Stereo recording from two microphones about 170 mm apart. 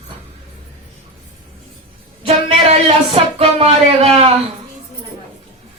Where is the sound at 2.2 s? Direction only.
35° right (ahead or behind).